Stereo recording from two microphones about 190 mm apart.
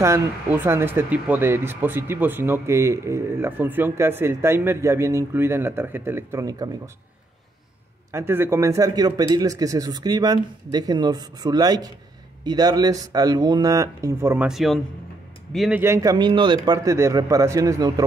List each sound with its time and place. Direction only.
0.0 s speech: 10° right (ahead or behind)
8.1 s a man's voice: 15° right (ahead or behind)
14.5 s a man's voice: centre (ahead or behind)
15.8 s a man's voice: 15° right (ahead or behind)